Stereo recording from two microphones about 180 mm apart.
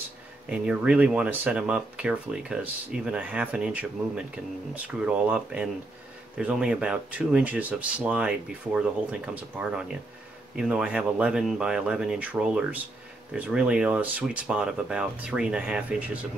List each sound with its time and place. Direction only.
0.5 s speech: 5° right (ahead or behind)